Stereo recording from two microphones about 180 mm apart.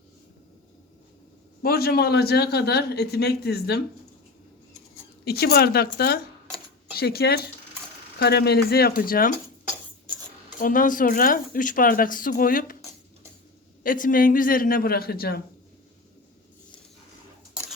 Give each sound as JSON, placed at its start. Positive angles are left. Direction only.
{"t": 1.6, "sound": "a man's voice", "side_deg": 60}
{"t": 5.2, "sound": "a man's voice", "side_deg": 60}
{"t": 10.6, "sound": "speech", "side_deg": 50}
{"t": 13.8, "sound": "speech", "side_deg": 50}